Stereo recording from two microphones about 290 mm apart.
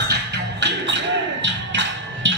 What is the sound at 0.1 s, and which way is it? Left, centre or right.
Music, right.